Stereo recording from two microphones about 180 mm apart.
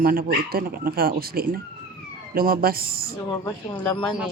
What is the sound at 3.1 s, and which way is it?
A woman's voice, 15° left (ahead or behind).